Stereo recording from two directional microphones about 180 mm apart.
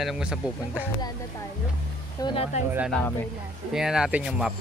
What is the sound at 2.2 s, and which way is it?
Speech, 30° left (ahead or behind).